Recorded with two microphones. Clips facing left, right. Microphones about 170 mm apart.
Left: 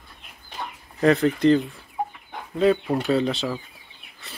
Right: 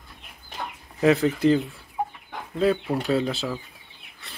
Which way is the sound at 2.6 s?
Centre (ahead or behind).